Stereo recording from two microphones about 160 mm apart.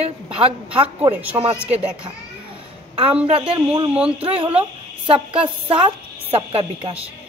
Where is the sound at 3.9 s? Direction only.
5° right (ahead or behind).